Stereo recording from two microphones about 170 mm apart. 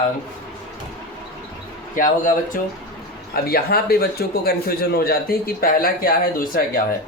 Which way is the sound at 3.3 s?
65° left (ahead or behind).